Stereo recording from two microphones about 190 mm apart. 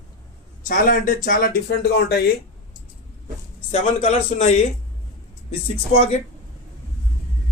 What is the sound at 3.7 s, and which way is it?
A man's voice, 35° left (ahead or behind).